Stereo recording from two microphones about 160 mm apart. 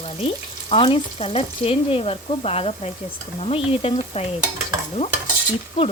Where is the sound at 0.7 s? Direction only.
40° left (ahead or behind).